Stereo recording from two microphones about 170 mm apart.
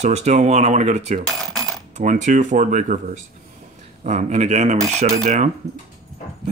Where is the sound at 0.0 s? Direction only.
40° right (ahead or behind).